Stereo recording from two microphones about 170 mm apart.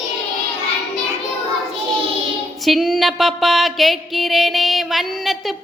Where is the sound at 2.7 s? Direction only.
Centre (ahead or behind).